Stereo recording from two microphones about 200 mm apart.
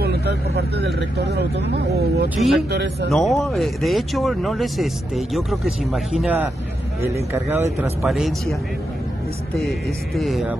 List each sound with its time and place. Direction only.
0.0 s speech: 55° right (ahead or behind)
2.2 s speech: centre (ahead or behind)
2.7 s speech: 55° right (ahead or behind)
3.1 s speech: centre (ahead or behind)
8.0 s speech: centre (ahead or behind)
9.6 s speech: centre (ahead or behind)